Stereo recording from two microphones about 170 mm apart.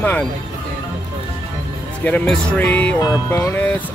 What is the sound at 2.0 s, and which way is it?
Speech, 10° left (ahead or behind).